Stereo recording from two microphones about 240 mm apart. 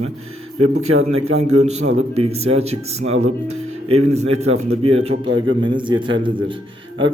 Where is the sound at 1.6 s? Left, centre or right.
Right.